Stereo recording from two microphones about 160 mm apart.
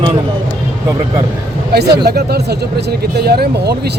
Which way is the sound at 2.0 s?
80° right.